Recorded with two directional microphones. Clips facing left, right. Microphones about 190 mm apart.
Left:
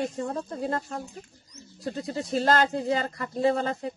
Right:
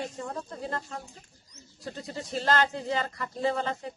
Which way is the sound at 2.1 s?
40° left (ahead or behind).